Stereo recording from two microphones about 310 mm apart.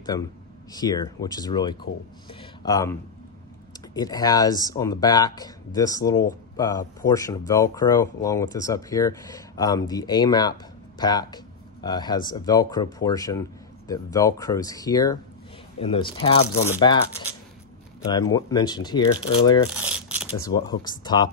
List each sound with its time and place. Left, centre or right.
0.0 s speech: centre
18.0 s speech: centre
19.7 s crumpling: centre
20.4 s speech: centre